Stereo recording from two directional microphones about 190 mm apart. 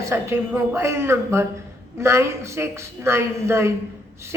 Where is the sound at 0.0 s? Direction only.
15° right (ahead or behind).